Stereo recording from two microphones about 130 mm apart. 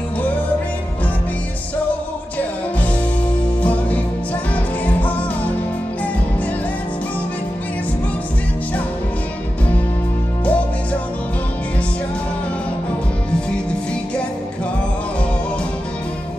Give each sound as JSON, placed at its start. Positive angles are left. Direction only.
{"t": 4.8, "sound": "music", "side_deg": 10}
{"t": 10.4, "sound": "music", "side_deg": 10}